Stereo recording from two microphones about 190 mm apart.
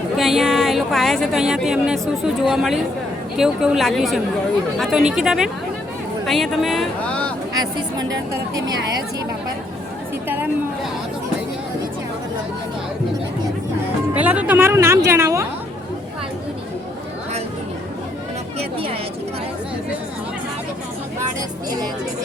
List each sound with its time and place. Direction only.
0.2 s a woman's voice: centre (ahead or behind)
7.5 s a woman's voice: 20° right (ahead or behind)
10.2 s chatter: 10° right (ahead or behind)
14.2 s speech: 10° right (ahead or behind)